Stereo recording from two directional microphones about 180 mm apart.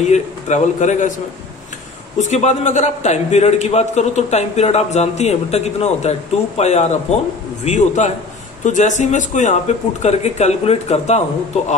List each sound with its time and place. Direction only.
0.0 s a man's voice: 40° left (ahead or behind)